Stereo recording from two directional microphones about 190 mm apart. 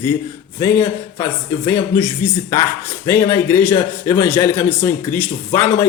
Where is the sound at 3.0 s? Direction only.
15° left (ahead or behind).